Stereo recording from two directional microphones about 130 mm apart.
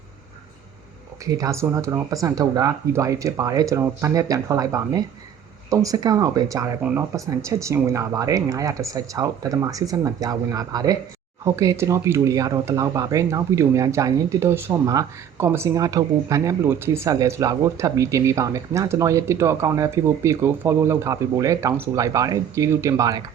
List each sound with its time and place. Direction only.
1.2 s speech: 25° right (ahead or behind)